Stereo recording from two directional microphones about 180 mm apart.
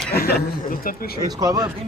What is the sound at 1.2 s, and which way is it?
Speech, 20° right (ahead or behind).